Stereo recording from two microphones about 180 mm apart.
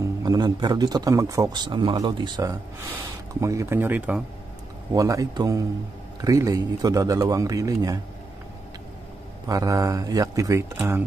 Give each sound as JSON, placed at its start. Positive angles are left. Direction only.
{"t": 0.2, "sound": "speech", "side_deg": -20}
{"t": 9.5, "sound": "speech", "side_deg": -20}